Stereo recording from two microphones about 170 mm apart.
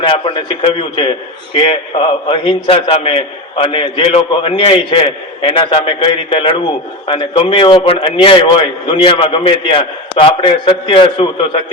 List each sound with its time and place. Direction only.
0.0 s a man's voice: 30° left (ahead or behind)